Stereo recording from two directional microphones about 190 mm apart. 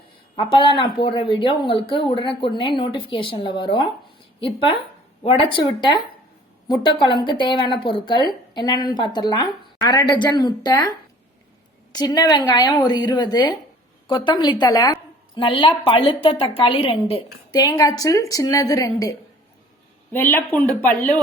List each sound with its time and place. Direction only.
0.3 s a woman's voice: 25° left (ahead or behind)
7.0 s a woman's voice: 25° left (ahead or behind)
20.1 s speech: 10° left (ahead or behind)